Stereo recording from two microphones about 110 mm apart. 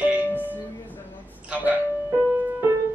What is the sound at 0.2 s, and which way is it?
Music, 20° left (ahead or behind).